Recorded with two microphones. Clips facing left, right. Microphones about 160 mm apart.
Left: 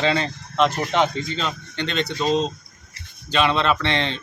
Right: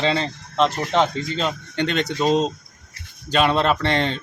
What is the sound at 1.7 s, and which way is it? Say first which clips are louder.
Speech: right 2 dB; 50° right (ahead or behind).